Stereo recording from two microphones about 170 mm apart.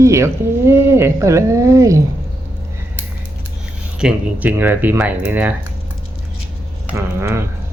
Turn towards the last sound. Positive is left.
turn(degrees=-15)  # may be behind; listen again after turning